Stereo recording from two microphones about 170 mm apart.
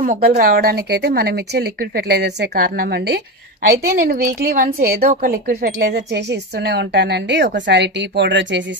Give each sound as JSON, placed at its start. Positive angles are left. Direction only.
{"t": 0.0, "sound": "a woman's voice", "side_deg": -60}